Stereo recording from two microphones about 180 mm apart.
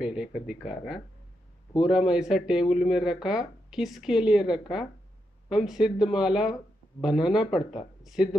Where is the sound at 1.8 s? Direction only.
5° right (ahead or behind).